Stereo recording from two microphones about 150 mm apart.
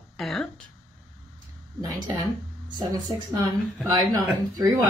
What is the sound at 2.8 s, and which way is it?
Speech, 25° right (ahead or behind).